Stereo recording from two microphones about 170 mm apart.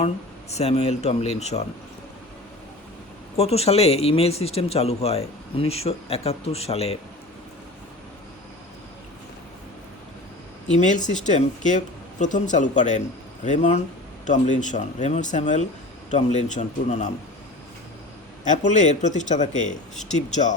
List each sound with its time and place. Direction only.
0.5 s speech: 40° left (ahead or behind)
3.3 s speech: 35° left (ahead or behind)
10.7 s speech: 45° left (ahead or behind)
18.4 s speech: 45° left (ahead or behind)